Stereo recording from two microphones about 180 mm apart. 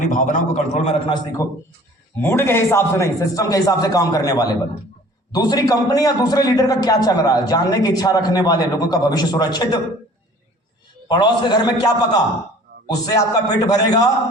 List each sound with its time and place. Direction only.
0.0 s a man's voice: 45° left (ahead or behind); by 9.8 s 20° left (ahead or behind)
11.1 s a man's voice: 25° left (ahead or behind)